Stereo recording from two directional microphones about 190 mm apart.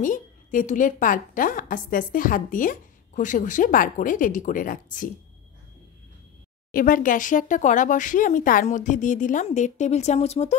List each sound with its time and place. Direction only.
0.0 s a woman's voice: 45° left (ahead or behind)
6.7 s a woman's voice: 45° left (ahead or behind)